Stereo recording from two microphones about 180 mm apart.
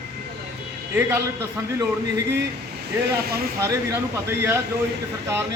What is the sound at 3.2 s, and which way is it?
Speech, 60° right (ahead or behind).